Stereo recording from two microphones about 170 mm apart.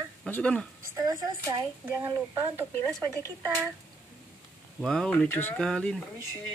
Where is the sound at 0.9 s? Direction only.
20° right (ahead or behind).